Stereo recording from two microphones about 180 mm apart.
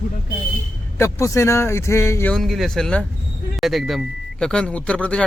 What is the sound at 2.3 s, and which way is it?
A man's voice, centre (ahead or behind).